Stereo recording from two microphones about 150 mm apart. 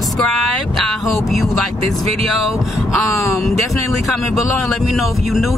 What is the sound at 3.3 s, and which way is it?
Speech, centre (ahead or behind).